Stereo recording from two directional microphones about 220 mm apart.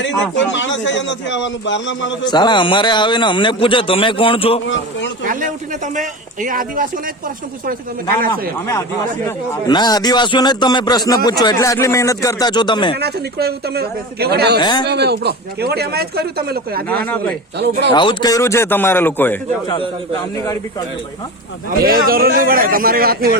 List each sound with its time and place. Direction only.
0.3 s a man's voice: 55° left (ahead or behind)
2.2 s a man's voice: 20° left (ahead or behind)
4.6 s a man's voice: 55° left (ahead or behind)
5.8 s a man's voice: 35° right (ahead or behind)
8.3 s a man's voice: 15° left (ahead or behind)
13.0 s speech: 45° right (ahead or behind)
14.6 s a man's voice: 20° left (ahead or behind)
14.8 s speech: 50° right (ahead or behind)
17.9 s speech: 20° left (ahead or behind)
21.8 s a man's voice: 40° right (ahead or behind)